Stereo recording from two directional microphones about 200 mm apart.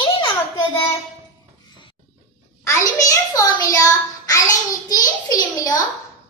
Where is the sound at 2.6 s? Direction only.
15° left (ahead or behind).